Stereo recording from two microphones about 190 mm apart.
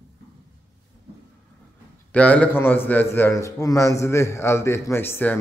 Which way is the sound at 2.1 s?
10° left (ahead or behind).